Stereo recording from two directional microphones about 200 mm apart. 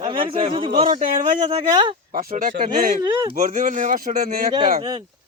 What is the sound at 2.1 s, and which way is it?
Speech, 45° right (ahead or behind).